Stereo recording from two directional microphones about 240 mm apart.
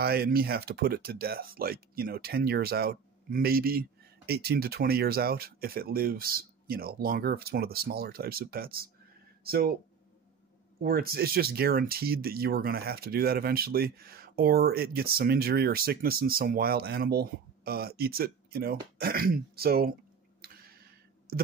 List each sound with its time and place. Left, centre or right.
0.0 s speech: right
10.8 s speech: right
20.4 s a sound: right